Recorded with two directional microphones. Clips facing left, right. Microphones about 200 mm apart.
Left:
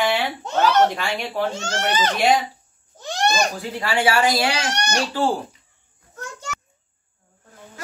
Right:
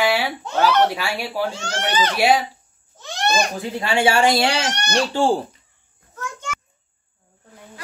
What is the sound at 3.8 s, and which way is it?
Speech, 25° right (ahead or behind).